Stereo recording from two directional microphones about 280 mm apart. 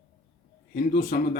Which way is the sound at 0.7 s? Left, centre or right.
Left.